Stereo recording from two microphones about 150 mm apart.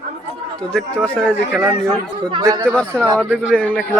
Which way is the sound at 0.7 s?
5° left (ahead or behind).